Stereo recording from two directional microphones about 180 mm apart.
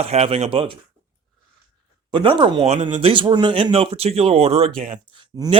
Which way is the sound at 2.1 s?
25° right (ahead or behind).